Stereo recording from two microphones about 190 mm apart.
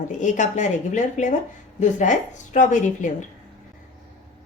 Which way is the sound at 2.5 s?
40° left (ahead or behind).